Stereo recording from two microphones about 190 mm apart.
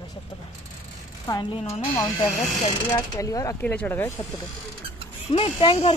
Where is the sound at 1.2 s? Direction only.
20° left (ahead or behind).